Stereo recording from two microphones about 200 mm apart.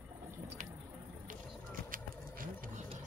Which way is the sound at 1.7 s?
45° right (ahead or behind).